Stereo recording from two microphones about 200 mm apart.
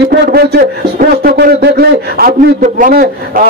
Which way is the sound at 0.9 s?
50° right (ahead or behind).